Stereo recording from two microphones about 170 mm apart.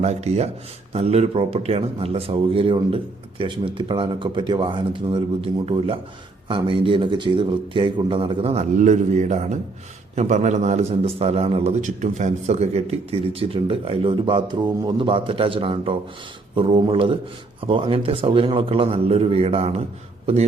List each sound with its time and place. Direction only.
0.0 s a man's voice: 40° right (ahead or behind)